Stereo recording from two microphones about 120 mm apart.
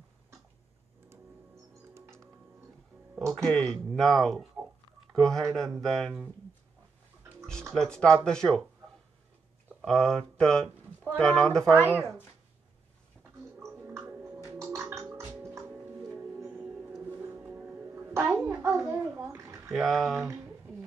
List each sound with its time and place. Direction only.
1.0 s music: 25° right (ahead or behind)
3.4 s speech: 5° left (ahead or behind)
7.7 s speech: 5° left (ahead or behind)
9.8 s speech: 5° left (ahead or behind)
11.7 s speech: 20° left (ahead or behind)
13.6 s a sound: 20° right (ahead or behind)
16.1 s music: 20° right (ahead or behind)
18.1 s bathtub: 20° right (ahead or behind)
19.7 s speech: centre (ahead or behind)
20.2 s speech: 20° right (ahead or behind)